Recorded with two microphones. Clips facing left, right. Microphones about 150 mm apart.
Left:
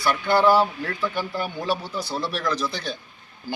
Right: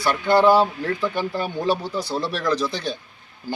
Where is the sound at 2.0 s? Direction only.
Centre (ahead or behind).